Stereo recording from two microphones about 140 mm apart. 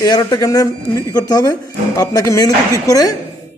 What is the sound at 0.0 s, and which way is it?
Speech, 25° left (ahead or behind).